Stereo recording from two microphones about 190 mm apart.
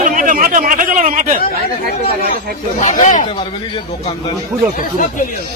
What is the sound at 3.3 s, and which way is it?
Speech, 30° left (ahead or behind).